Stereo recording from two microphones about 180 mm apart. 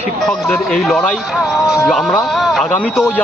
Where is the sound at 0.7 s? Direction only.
Centre (ahead or behind).